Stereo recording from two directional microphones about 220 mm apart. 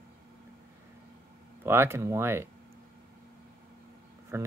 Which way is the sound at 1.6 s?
10° right (ahead or behind).